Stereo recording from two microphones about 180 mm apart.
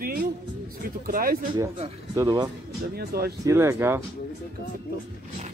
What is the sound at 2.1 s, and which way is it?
Speech, 20° right (ahead or behind).